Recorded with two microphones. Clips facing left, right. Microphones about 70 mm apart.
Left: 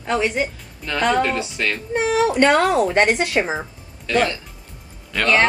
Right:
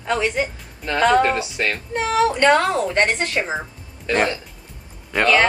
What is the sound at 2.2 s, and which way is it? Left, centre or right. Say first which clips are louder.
A woman's voice: even; centre.